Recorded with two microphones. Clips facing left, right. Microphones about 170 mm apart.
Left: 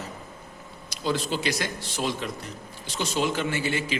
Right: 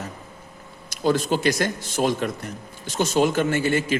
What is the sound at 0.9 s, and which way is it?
A man's voice, 50° right (ahead or behind).